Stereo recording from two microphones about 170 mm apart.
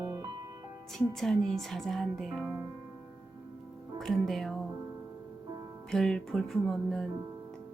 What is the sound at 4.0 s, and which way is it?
Speech, centre (ahead or behind).